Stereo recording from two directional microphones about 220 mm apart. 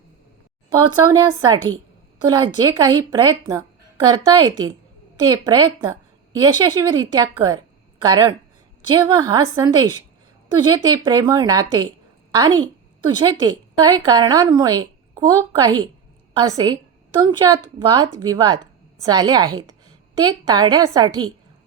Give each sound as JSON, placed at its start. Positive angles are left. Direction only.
{"t": 0.7, "sound": "a woman's voice", "side_deg": -20}